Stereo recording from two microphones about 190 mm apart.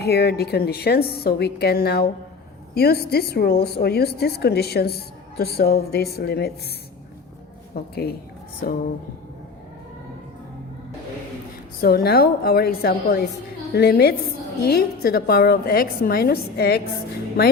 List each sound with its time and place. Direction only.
0.0 s a woman's voice: 55° left (ahead or behind)
7.7 s a woman's voice: 55° left (ahead or behind)
11.8 s a woman's voice: 50° left (ahead or behind)